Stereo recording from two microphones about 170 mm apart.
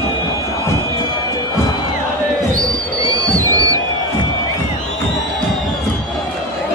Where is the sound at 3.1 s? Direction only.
20° right (ahead or behind).